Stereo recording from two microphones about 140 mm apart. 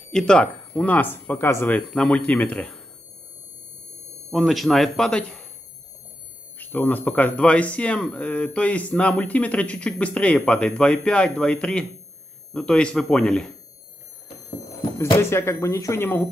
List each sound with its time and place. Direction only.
0.1 s speech: 5° left (ahead or behind)
4.3 s speech: centre (ahead or behind)
6.6 s speech: 15° left (ahead or behind)
15.1 s speech: 20° left (ahead or behind)